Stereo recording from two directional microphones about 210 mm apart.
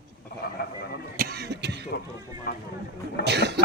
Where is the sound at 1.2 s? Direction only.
50° right (ahead or behind).